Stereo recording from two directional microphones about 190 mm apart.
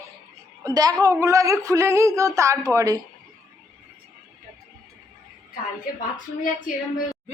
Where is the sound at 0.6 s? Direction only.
20° right (ahead or behind).